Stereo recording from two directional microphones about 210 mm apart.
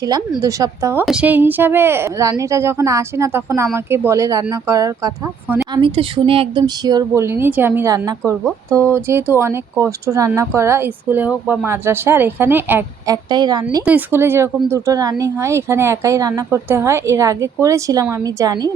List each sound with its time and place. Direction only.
0.4 s speech: 15° right (ahead or behind)
13.3 s a woman's voice: 20° right (ahead or behind)
13.8 s speech: 10° right (ahead or behind)